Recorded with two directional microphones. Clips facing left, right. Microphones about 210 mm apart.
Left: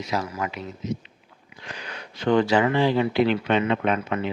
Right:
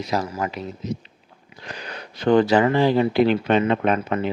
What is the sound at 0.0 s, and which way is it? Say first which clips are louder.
Speech: right 3 dB; 35° right (ahead or behind).